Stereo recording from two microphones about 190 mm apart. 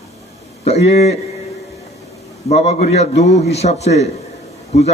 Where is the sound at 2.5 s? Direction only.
35° left (ahead or behind).